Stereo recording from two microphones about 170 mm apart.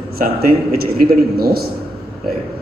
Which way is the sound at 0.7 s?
60° right (ahead or behind).